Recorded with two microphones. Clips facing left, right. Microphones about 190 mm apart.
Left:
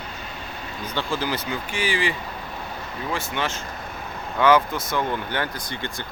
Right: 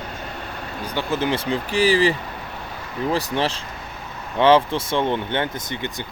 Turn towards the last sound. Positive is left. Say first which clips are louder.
# right 3 dB
turn(degrees=-20)  # may be behind; listen again after turning